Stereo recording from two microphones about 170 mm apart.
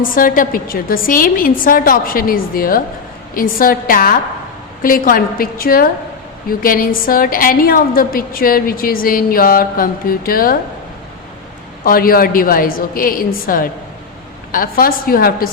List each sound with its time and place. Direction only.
0.1 s a woman's voice: 55° left (ahead or behind)
11.8 s a woman's voice: 60° left (ahead or behind)